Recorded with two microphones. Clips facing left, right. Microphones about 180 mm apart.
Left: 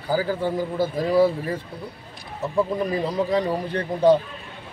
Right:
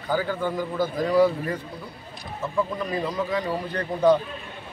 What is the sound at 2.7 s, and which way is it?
Speech, 30° left (ahead or behind).